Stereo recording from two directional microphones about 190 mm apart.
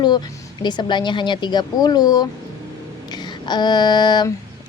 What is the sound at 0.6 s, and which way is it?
A woman's voice, 25° left (ahead or behind).